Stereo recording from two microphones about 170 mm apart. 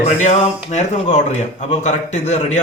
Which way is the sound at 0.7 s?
45° left (ahead or behind).